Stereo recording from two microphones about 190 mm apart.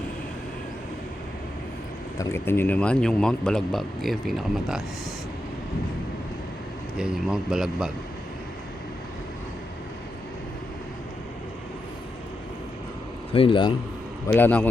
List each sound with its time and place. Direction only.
2.1 s speech: 15° left (ahead or behind)
7.0 s speech: 5° right (ahead or behind)
13.3 s speech: 25° left (ahead or behind)
14.3 s a man's voice: 10° left (ahead or behind)